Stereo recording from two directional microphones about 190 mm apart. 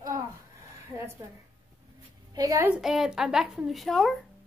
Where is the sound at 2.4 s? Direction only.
20° right (ahead or behind).